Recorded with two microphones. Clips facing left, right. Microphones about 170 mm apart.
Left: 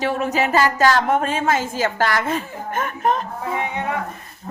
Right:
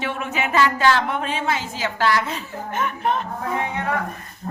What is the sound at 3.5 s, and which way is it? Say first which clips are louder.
Speech: left 1 dB; 20° left (ahead or behind).